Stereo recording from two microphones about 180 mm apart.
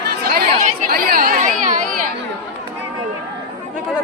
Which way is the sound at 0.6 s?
50° right (ahead or behind).